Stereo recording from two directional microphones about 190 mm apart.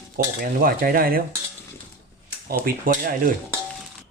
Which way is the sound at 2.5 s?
50° right (ahead or behind).